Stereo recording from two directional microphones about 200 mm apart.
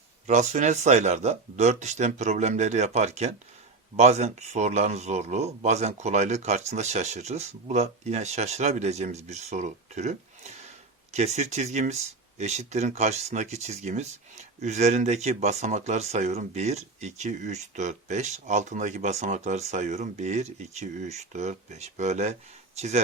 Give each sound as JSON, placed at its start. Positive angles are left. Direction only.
{"t": 0.3, "sound": "speech", "side_deg": -35}